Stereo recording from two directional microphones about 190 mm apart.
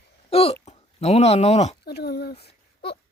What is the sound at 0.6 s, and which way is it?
Speech, 35° left (ahead or behind).